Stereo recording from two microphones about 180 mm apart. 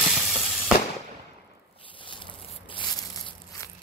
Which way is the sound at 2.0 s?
25° left (ahead or behind).